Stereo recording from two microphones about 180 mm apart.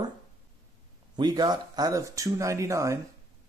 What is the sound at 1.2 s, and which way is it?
Speech, 25° right (ahead or behind).